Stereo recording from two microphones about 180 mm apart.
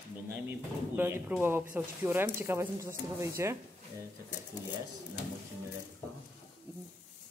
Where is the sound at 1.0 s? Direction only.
10° right (ahead or behind).